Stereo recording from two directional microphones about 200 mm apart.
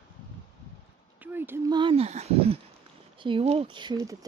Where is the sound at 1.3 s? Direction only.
10° right (ahead or behind).